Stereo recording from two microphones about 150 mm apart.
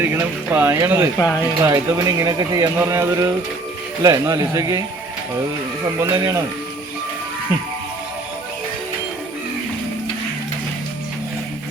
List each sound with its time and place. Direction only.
0.0 s speech: 15° right (ahead or behind)
5.8 s speech: 20° right (ahead or behind)